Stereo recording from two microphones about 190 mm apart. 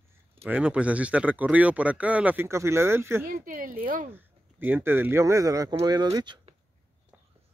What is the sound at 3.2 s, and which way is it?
Speech, 45° right (ahead or behind).